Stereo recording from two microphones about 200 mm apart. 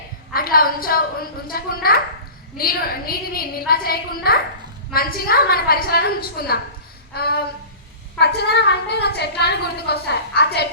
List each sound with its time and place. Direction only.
0.3 s a woman's voice: 45° left (ahead or behind)